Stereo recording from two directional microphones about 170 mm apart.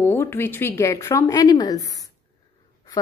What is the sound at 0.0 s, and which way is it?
A woman's voice, 15° left (ahead or behind).